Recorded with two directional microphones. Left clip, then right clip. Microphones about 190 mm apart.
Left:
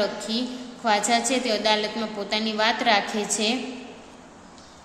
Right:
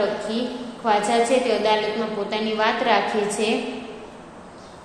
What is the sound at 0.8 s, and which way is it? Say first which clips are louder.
A woman's voice: right 3 dB; 30° left (ahead or behind).